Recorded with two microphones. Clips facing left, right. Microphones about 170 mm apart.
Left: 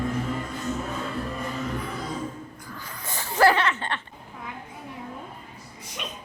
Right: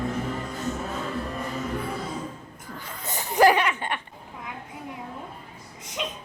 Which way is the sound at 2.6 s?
25° right (ahead or behind).